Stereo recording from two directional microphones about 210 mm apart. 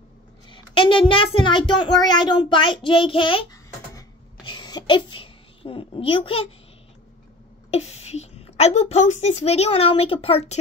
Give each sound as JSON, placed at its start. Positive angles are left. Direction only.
{"t": 0.5, "sound": "a child's voice", "side_deg": 25}
{"t": 4.5, "sound": "a sound", "side_deg": 20}
{"t": 7.7, "sound": "a woman's voice", "side_deg": 30}